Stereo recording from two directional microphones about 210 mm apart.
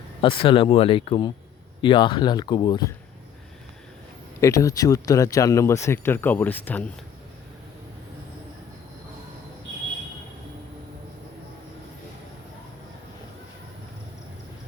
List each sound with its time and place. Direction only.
0.2 s speech: 25° left (ahead or behind)
4.4 s speech: 15° left (ahead or behind)